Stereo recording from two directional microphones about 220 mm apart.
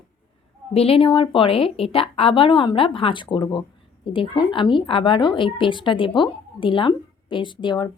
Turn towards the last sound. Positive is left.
turn(degrees=20)  # may be behind; listen again after turning